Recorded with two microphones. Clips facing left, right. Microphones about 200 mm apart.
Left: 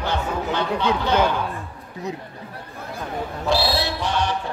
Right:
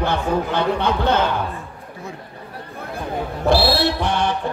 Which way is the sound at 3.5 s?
60° right (ahead or behind).